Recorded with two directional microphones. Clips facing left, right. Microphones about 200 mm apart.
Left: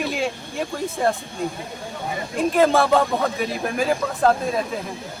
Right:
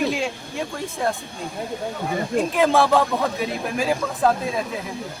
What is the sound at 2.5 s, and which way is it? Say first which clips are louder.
A man's voice: left 1 dB; centre (ahead or behind).